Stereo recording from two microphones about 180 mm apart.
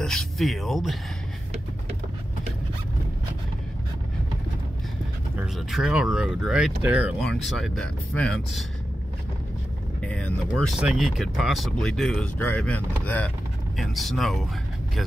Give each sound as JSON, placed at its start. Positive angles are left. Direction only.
{"t": 0.0, "sound": "speech", "side_deg": 0}
{"t": 5.7, "sound": "speech", "side_deg": 0}
{"t": 10.0, "sound": "speech", "side_deg": 5}